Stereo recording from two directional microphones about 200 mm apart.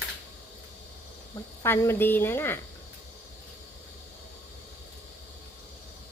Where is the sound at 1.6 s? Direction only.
10° left (ahead or behind).